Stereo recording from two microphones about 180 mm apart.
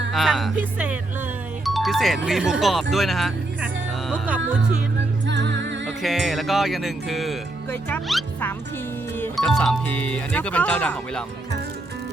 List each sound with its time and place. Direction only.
0.1 s speech: centre (ahead or behind)
5.2 s music: 80° right
6.0 s speech: centre (ahead or behind)